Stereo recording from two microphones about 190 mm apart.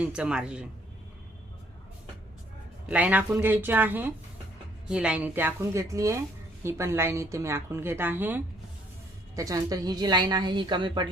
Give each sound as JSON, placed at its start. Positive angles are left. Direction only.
{"t": 0.0, "sound": "speech", "side_deg": -5}
{"t": 2.8, "sound": "a woman's voice", "side_deg": -10}